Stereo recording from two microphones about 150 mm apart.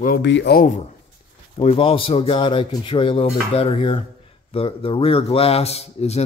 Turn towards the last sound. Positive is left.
turn(degrees=45)  # may be behind; listen again after turning